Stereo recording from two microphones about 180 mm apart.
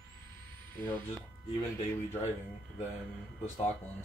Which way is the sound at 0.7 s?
10° left (ahead or behind).